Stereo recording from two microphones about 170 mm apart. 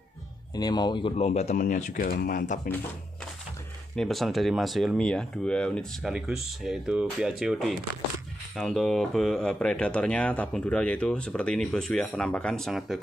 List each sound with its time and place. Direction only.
0.6 s speech: 25° left (ahead or behind); by 2.7 s 50° left (ahead or behind)
3.9 s speech: centre (ahead or behind)